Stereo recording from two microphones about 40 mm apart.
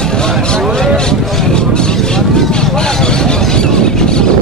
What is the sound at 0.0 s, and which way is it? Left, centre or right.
Vehicle, centre.